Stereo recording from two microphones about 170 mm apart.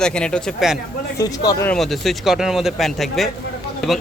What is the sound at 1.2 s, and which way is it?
Speech, 20° left (ahead or behind).